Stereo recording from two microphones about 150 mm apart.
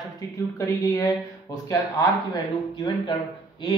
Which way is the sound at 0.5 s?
25° left (ahead or behind).